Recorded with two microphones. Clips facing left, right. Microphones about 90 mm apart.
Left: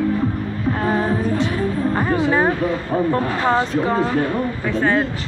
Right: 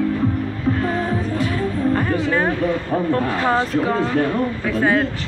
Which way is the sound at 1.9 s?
15° left (ahead or behind).